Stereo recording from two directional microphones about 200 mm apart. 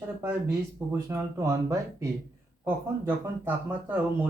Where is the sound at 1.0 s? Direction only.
15° right (ahead or behind).